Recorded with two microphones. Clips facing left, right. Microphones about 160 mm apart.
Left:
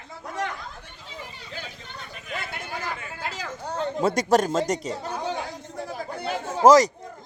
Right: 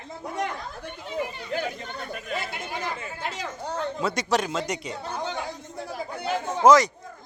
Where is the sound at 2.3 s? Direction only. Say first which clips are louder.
Even; 25° right (ahead or behind).